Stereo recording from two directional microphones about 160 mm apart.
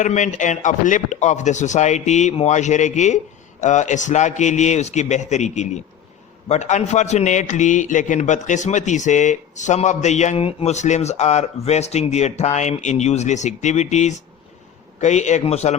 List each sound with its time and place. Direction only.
0.0 s a man's voice: 50° left (ahead or behind)